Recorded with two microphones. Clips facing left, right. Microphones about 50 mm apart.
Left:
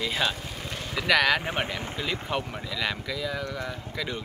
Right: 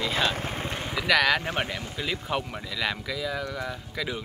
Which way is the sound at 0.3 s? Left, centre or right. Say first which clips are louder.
Right 4 dB; right.